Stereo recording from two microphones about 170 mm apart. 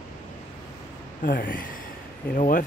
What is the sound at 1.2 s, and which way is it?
Speech, 55° left (ahead or behind).